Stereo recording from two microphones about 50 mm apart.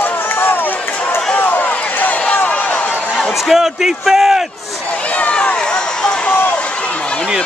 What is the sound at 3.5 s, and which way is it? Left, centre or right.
Speech, centre.